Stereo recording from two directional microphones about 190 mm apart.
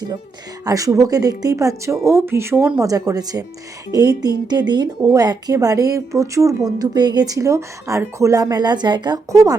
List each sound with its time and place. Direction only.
0.6 s speech: 15° right (ahead or behind)